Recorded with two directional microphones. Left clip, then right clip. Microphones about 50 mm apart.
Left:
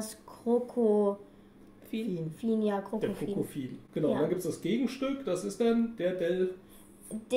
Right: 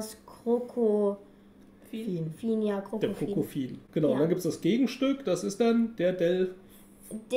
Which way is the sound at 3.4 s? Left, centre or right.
Right.